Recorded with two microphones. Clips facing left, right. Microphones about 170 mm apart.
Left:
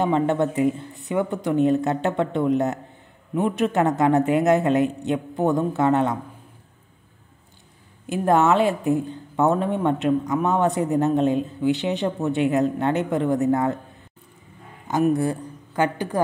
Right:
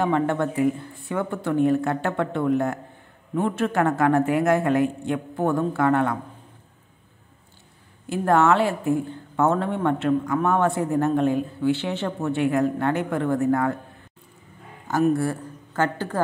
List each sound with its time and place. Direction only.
0.0 s a woman's voice: 20° left (ahead or behind)
8.1 s a woman's voice: 20° left (ahead or behind)
15.1 s a woman's voice: 15° left (ahead or behind)